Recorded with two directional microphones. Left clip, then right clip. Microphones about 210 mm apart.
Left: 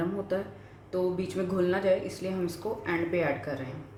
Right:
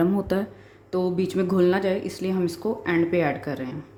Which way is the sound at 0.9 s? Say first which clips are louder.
Right 5 dB; 50° right (ahead or behind).